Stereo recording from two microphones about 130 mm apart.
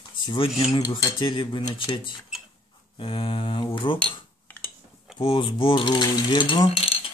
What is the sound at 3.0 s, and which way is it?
Mechanisms, 40° left (ahead or behind).